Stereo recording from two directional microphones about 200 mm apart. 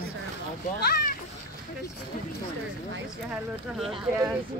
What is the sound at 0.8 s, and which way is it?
Speech, 50° left (ahead or behind).